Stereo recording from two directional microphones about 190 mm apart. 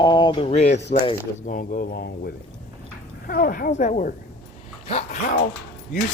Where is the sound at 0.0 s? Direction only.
25° left (ahead or behind); by 2.0 s 45° left (ahead or behind).